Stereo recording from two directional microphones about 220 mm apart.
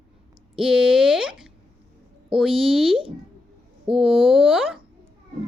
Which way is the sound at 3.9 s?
Centre (ahead or behind).